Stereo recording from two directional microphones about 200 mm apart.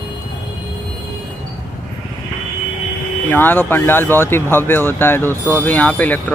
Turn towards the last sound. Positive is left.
turn(degrees=10)  # may be behind; listen again after turning